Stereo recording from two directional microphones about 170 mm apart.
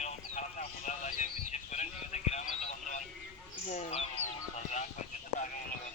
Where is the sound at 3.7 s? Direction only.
45° left (ahead or behind).